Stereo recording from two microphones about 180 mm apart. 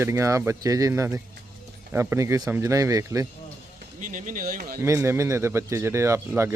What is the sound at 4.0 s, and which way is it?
Speech, 45° right (ahead or behind).